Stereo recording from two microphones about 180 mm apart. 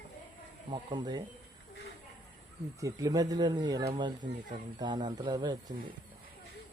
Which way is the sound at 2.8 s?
20° right (ahead or behind).